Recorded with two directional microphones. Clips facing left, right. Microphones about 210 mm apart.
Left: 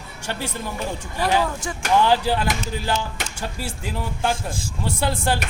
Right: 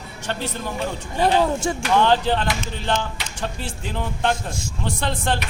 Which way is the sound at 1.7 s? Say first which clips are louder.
Right 7 dB; 30° right (ahead or behind).